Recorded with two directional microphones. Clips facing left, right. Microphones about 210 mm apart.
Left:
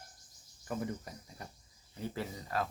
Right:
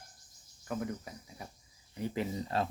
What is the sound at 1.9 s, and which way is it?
Speech, 20° right (ahead or behind).